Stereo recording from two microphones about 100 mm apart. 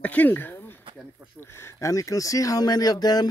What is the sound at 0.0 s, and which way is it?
Speech, 15° left (ahead or behind).